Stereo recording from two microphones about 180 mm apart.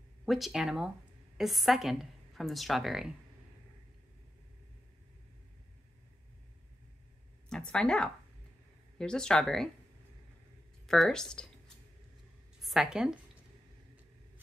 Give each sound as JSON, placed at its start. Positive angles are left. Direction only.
{"t": 0.2, "sound": "a woman's voice", "side_deg": 0}
{"t": 7.4, "sound": "a woman's voice", "side_deg": 5}
{"t": 10.9, "sound": "a woman's voice", "side_deg": 5}
{"t": 12.6, "sound": "speech", "side_deg": -5}